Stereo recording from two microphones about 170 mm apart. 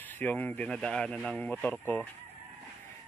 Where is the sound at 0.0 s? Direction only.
10° left (ahead or behind).